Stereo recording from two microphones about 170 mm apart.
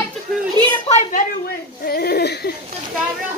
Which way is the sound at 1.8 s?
65° left (ahead or behind).